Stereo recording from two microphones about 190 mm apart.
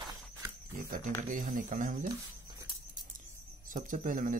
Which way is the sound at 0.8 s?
45° right (ahead or behind).